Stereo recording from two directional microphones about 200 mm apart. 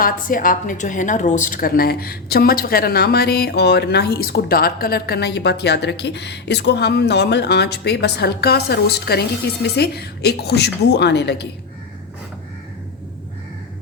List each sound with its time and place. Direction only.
0.0 s a woman's voice: 45° left (ahead or behind)